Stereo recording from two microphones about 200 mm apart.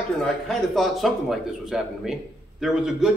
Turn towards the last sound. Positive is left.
turn(degrees=-5)  # may be behind; listen again after turning